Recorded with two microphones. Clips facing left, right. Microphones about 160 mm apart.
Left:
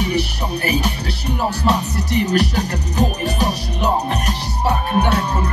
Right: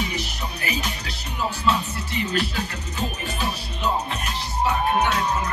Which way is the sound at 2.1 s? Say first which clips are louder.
Left 7 dB; 70° left (ahead or behind).